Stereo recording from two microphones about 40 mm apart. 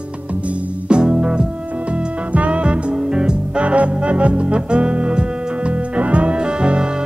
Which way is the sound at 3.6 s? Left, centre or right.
Right.